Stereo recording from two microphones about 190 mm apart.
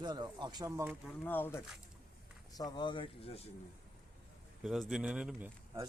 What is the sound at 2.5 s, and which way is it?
Speech, 20° left (ahead or behind).